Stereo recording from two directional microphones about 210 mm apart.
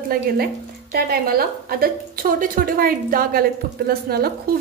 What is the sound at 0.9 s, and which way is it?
Speech, 45° right (ahead or behind).